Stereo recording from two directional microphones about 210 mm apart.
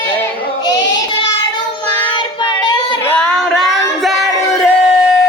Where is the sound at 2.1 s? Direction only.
20° left (ahead or behind).